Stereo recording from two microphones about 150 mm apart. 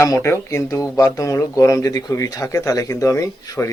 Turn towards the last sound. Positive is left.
turn(degrees=20)  # may be behind; listen again after turning